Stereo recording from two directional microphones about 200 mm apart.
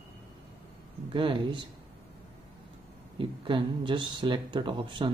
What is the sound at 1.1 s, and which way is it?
Speech, 25° right (ahead or behind).